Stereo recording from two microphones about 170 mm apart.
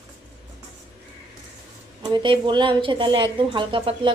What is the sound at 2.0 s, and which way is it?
A woman's voice, 30° right (ahead or behind).